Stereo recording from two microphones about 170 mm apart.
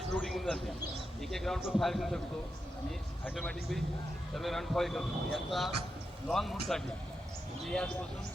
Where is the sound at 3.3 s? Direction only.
Centre (ahead or behind).